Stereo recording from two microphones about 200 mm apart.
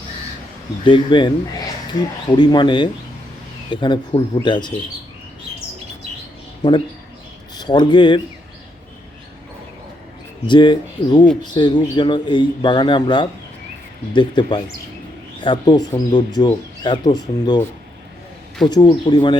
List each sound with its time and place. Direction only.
0.9 s speech: 25° left (ahead or behind)
6.6 s speech: 20° left (ahead or behind)
10.4 s speech: 25° left (ahead or behind)
18.7 s speech: 20° left (ahead or behind)